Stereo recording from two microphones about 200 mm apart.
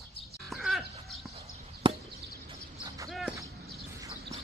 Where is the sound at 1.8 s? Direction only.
25° right (ahead or behind).